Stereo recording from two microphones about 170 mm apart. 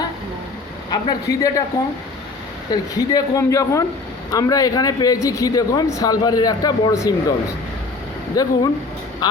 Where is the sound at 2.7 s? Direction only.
20° left (ahead or behind).